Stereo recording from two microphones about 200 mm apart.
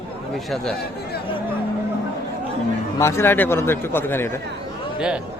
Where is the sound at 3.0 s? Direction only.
15° left (ahead or behind).